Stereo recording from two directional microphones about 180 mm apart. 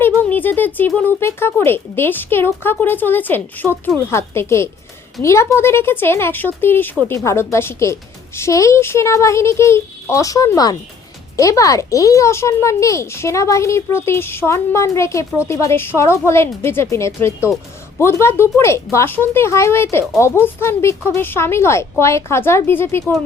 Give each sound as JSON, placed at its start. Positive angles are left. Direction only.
{"t": 0.0, "sound": "speech", "side_deg": 10}